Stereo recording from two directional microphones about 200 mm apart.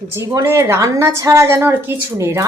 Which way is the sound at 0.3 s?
15° right (ahead or behind).